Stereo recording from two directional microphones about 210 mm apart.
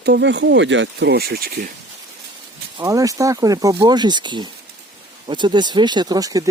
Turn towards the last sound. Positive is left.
turn(degrees=-15)  # may be behind; listen again after turning